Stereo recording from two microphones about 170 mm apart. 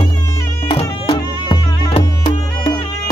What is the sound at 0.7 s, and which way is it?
Music, 30° left (ahead or behind).